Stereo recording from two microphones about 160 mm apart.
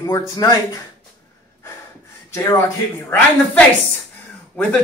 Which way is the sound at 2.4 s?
20° left (ahead or behind).